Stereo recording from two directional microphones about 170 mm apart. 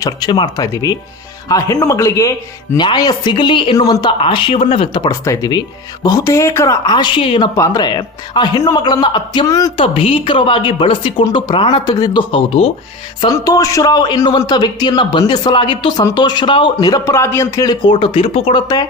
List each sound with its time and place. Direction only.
0.0 s speech: 25° left (ahead or behind)
7.5 s speech: 20° left (ahead or behind)
9.8 s a woman's voice: 35° left (ahead or behind)